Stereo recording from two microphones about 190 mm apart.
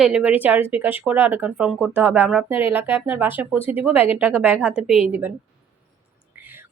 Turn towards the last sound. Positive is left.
turn(degrees=-10)  # may be behind; listen again after turning